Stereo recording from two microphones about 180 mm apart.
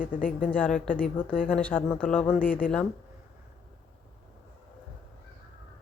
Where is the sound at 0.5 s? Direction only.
10° left (ahead or behind).